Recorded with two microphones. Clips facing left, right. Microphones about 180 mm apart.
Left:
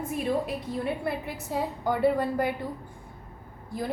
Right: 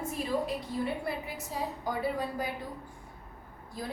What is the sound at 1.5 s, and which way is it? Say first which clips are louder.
A woman's voice: left 6 dB; 65° left (ahead or behind).